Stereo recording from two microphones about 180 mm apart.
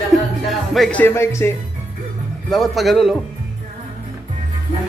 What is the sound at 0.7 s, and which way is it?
Music, 5° left (ahead or behind).